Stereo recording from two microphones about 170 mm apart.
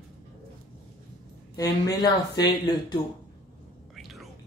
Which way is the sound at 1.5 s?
20° left (ahead or behind).